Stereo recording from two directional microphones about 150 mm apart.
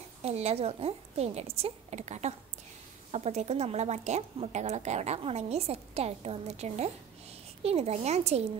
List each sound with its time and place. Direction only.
0.2 s a woman's voice: 45° right (ahead or behind)